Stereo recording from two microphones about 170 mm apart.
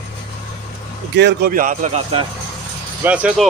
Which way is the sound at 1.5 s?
55° right (ahead or behind).